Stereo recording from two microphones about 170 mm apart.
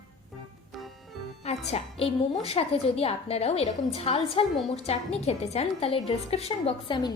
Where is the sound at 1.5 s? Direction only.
35° left (ahead or behind).